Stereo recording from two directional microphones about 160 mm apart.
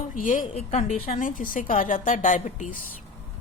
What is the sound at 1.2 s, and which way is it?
A woman's voice, 55° left (ahead or behind).